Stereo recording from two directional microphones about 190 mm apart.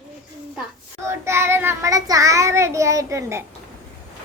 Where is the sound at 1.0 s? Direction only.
15° right (ahead or behind).